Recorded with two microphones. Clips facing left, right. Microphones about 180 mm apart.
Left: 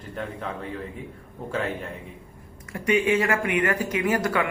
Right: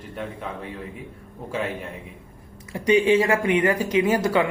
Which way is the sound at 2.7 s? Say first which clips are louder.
Right 4 dB; 30° right (ahead or behind).